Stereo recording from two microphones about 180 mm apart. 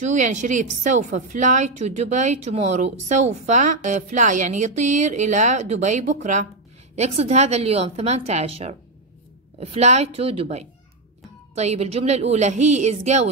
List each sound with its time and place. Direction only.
0.0 s a woman's voice: 45° right (ahead or behind)